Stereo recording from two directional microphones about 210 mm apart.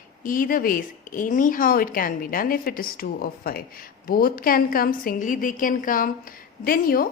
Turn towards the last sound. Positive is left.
turn(degrees=45)  # may be behind; listen again after turning